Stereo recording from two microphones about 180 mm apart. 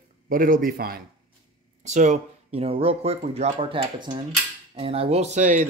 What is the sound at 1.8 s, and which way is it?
Speech, 40° right (ahead or behind).